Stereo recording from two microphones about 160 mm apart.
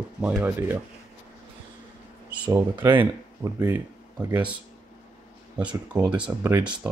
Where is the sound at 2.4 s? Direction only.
25° right (ahead or behind).